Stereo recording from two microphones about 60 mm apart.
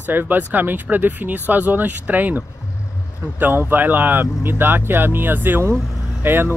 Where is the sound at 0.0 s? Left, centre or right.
Right.